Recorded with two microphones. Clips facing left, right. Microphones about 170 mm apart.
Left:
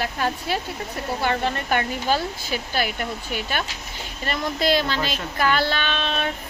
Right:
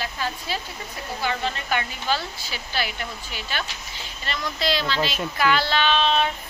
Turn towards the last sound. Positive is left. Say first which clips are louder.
# right 4 dB
turn(degrees=50)  # may be behind; listen again after turning